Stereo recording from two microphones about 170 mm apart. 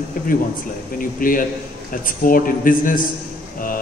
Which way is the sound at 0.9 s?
55° left (ahead or behind).